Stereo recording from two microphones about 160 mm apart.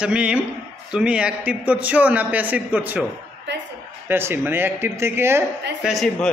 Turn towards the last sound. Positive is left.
turn(degrees=0)  # may be behind; listen again after turning